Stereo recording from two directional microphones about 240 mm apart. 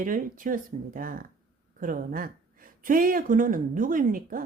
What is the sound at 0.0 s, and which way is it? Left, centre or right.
Speech, right.